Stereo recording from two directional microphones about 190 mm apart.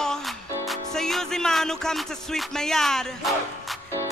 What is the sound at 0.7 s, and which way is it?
Music, centre (ahead or behind).